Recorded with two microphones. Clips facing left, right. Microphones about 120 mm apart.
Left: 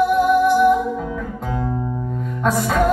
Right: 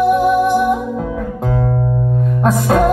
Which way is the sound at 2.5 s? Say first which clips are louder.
Right 4 dB; 50° right (ahead or behind).